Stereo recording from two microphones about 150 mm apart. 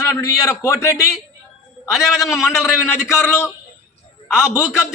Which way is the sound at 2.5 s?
20° left (ahead or behind).